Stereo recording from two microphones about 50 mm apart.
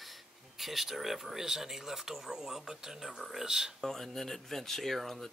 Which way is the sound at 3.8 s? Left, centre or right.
Centre.